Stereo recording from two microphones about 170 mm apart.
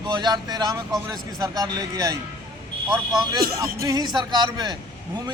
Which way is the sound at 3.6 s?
20° right (ahead or behind).